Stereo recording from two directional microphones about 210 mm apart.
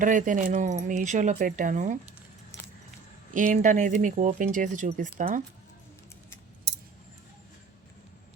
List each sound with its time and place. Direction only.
0.0 s speech: 40° right (ahead or behind)
2.5 s keys jangling: 15° left (ahead or behind)
3.5 s speech: 35° right (ahead or behind)